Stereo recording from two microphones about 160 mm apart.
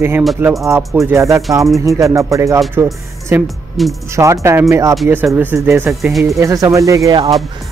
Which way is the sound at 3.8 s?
Centre (ahead or behind).